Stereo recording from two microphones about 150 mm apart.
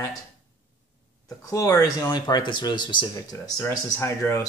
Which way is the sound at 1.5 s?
20° left (ahead or behind).